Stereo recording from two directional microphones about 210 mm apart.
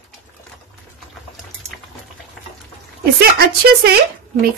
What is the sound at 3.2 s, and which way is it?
Speech, 50° right (ahead or behind).